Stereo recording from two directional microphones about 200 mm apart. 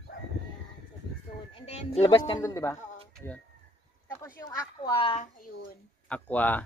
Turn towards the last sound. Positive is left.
turn(degrees=10)  # may be behind; listen again after turning